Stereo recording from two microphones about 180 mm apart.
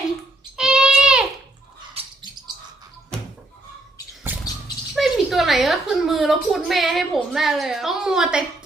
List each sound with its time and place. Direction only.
0.5 s a sound: 5° right (ahead or behind)
2.0 s bird: 35° right (ahead or behind)
4.3 s bird: 10° right (ahead or behind)
4.9 s a woman's voice: centre (ahead or behind)